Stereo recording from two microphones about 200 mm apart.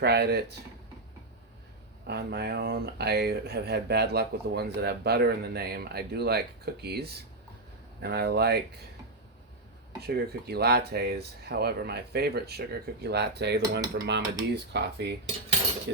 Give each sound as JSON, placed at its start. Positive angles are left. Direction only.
{"t": 0.0, "sound": "cutlery", "side_deg": -55}
{"t": 2.0, "sound": "speech", "side_deg": -55}
{"t": 10.1, "sound": "speech", "side_deg": -50}
{"t": 13.9, "sound": "cutlery", "side_deg": -55}